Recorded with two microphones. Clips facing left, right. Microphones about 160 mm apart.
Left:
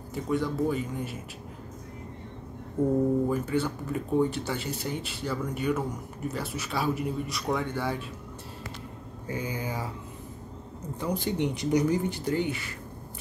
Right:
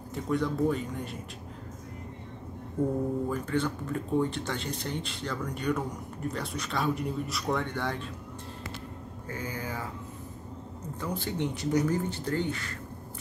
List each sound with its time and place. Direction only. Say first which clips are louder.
0.1 s speech: left 1 dB; centre (ahead or behind)
3.3 s speech: left 2 dB; 5° left (ahead or behind)
9.3 s speech: left 3 dB; 15° left (ahead or behind)
11.0 s speech: left 4 dB; 15° left (ahead or behind)